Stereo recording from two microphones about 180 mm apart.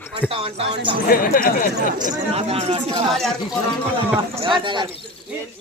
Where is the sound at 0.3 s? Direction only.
30° right (ahead or behind).